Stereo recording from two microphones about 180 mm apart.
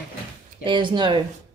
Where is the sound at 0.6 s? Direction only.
25° right (ahead or behind).